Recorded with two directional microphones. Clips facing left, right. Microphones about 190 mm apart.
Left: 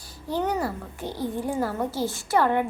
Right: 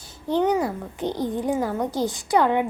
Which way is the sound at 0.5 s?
20° right (ahead or behind).